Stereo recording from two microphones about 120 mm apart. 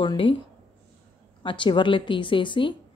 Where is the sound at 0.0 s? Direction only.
45° left (ahead or behind).